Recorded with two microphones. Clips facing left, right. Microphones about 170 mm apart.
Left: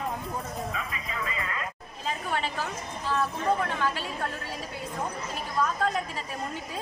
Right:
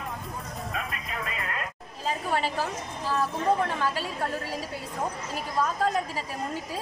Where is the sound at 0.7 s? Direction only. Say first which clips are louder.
Right 1 dB; 60° right (ahead or behind).